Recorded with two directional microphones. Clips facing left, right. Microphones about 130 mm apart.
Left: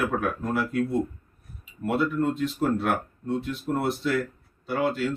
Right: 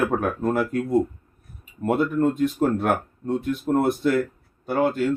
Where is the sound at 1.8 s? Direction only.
50° right (ahead or behind).